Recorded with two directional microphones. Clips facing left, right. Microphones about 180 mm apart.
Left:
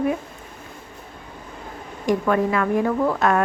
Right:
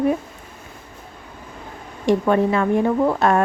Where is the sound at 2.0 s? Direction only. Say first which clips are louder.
Right 3 dB; 25° right (ahead or behind).